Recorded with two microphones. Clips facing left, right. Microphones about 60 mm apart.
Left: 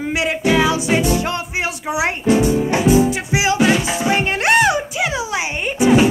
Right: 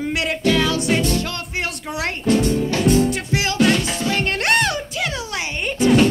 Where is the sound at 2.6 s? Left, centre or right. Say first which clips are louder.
Left 3 dB; left.